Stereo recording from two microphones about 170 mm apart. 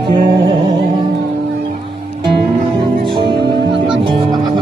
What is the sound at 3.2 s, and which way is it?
Music, 30° right (ahead or behind).